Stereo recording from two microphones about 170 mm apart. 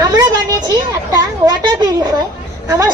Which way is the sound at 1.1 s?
20° right (ahead or behind).